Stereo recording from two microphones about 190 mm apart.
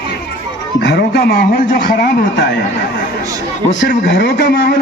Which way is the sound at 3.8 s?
65° left (ahead or behind).